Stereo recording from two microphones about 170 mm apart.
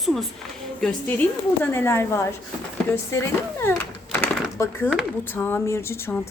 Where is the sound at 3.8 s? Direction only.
10° left (ahead or behind).